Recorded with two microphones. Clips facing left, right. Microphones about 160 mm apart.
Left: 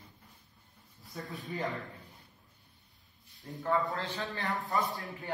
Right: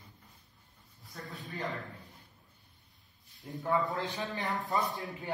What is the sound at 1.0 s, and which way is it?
Speech, centre (ahead or behind).